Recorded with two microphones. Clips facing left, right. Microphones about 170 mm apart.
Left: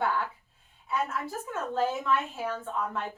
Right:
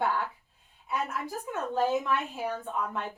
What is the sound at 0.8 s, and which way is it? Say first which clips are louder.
A woman's voice: left 1 dB; 15° right (ahead or behind).